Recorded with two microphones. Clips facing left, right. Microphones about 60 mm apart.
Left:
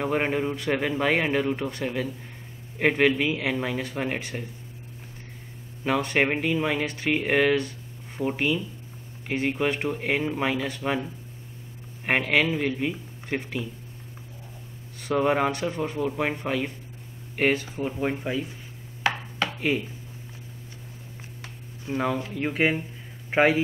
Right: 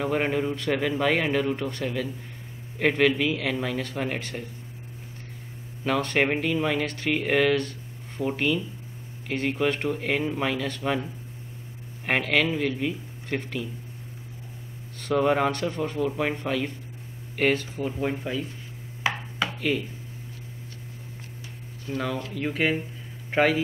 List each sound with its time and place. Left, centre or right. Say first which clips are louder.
0.0 s a man's voice: even; centre
5.9 s a man's voice: even; centre
15.0 s a man's voice: even; centre
21.8 s speech: left 3 dB; left